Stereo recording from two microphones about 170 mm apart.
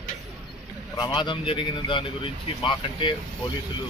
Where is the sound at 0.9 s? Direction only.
25° left (ahead or behind).